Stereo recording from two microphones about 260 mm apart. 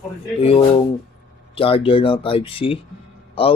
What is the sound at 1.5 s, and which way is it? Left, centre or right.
Speech, left.